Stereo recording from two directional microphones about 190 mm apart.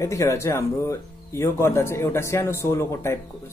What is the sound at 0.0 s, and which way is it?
Speech, 15° left (ahead or behind).